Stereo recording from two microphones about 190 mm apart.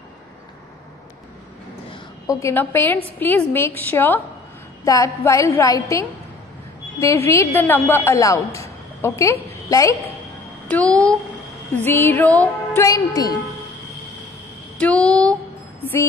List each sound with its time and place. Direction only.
1.9 s a woman's voice: 15° left (ahead or behind)
7.2 s a woman's voice: 15° left (ahead or behind)
10.7 s a woman's voice: 5° left (ahead or behind)
14.8 s speech: 5° left (ahead or behind)